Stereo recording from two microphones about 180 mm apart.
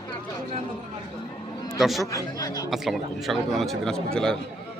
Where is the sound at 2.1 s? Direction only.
20° left (ahead or behind).